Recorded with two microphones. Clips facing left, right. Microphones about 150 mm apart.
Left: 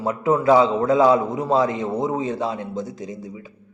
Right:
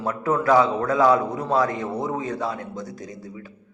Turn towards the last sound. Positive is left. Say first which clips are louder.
# left 3 dB
turn(degrees=20)  # may be behind; listen again after turning